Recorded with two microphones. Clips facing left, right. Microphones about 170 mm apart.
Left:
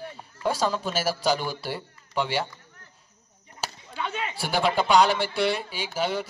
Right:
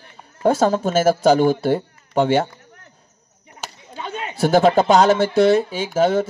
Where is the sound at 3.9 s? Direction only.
45° right (ahead or behind).